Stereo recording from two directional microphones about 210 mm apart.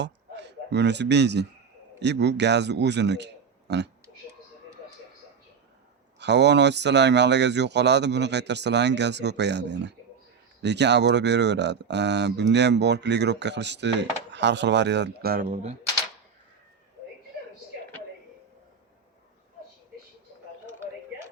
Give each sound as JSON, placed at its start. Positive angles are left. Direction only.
{"t": 0.0, "sound": "a man's voice", "side_deg": -55}
{"t": 6.1, "sound": "speech", "side_deg": -55}